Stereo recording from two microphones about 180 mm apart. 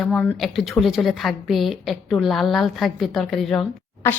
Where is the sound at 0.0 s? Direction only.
10° left (ahead or behind).